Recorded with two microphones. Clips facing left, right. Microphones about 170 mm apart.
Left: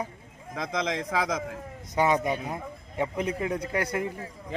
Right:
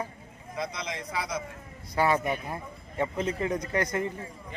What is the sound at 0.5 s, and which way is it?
Speech, 90° left.